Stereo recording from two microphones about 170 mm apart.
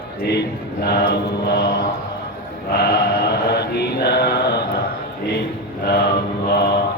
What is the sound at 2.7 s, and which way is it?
Mantra, 75° left (ahead or behind).